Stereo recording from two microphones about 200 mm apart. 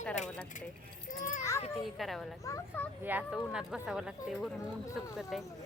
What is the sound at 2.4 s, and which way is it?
Speech, 15° left (ahead or behind).